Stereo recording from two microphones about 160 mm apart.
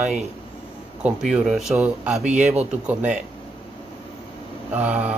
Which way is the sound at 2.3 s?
45° right (ahead or behind).